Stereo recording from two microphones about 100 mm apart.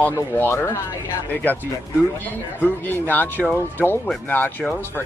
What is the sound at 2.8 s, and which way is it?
Speech, 20° left (ahead or behind).